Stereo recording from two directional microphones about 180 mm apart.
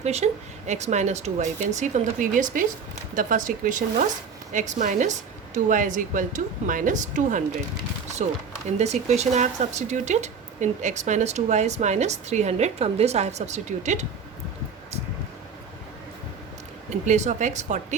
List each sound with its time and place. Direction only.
0.0 s speech: 35° right (ahead or behind)
8.8 s speech: 40° right (ahead or behind)
17.1 s speech: 40° right (ahead or behind)